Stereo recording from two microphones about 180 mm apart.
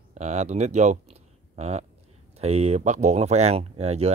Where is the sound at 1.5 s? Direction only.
35° right (ahead or behind).